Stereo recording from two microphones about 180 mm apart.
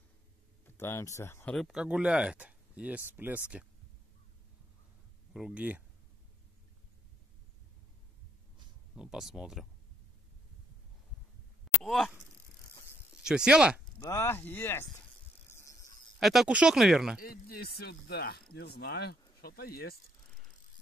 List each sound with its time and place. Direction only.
0.7 s speech: 15° left (ahead or behind); by 3.6 s 10° right (ahead or behind)
5.3 s speech: 5° right (ahead or behind)
8.9 s speech: 5° right (ahead or behind)
11.8 s speech: centre (ahead or behind)
13.2 s speech: 5° right (ahead or behind)
13.9 s speech: 15° left (ahead or behind)
15.5 s a sound: 15° left (ahead or behind)
16.2 s speech: centre (ahead or behind)
17.2 s speech: 55° left (ahead or behind)